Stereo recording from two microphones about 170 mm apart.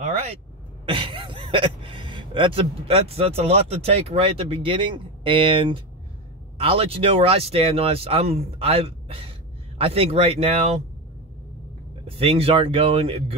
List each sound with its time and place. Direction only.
0.8 s speech: 30° right (ahead or behind)
12.2 s speech: 35° right (ahead or behind)